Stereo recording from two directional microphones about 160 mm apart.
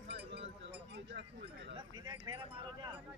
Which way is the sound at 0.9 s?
90° right.